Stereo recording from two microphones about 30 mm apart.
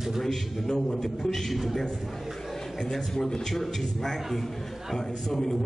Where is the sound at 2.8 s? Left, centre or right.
Centre.